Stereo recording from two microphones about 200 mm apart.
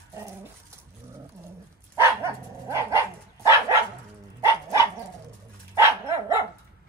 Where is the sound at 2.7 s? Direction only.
15° right (ahead or behind).